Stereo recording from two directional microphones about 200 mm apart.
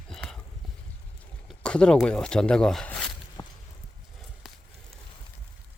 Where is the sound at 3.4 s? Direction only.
20° left (ahead or behind).